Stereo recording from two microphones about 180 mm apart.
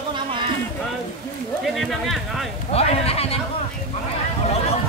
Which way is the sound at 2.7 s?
35° left (ahead or behind).